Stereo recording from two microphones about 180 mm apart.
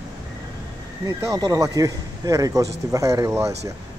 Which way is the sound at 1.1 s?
20° right (ahead or behind).